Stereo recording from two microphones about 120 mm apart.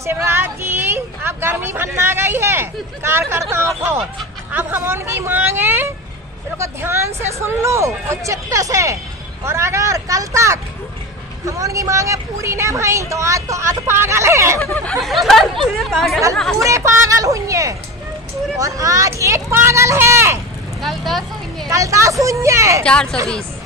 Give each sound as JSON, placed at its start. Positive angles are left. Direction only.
{"t": 0.0, "sound": "a woman's voice", "side_deg": -20}
{"t": 14.6, "sound": "speech", "side_deg": 15}
{"t": 16.6, "sound": "a woman's voice", "side_deg": -25}
{"t": 20.8, "sound": "a sound", "side_deg": 0}
{"t": 21.6, "sound": "a woman's voice", "side_deg": -25}